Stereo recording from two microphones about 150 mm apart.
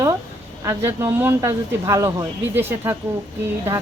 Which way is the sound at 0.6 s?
20° right (ahead or behind).